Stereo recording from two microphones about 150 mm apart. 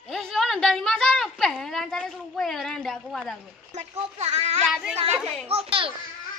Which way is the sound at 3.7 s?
45° right (ahead or behind).